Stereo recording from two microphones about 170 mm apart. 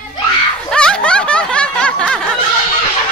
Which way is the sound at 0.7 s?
5° left (ahead or behind).